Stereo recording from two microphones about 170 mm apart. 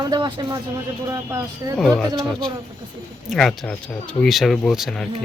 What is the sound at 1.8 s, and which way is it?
Speech, centre (ahead or behind).